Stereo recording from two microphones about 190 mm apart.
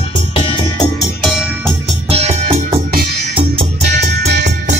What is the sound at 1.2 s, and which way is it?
Music, 5° right (ahead or behind).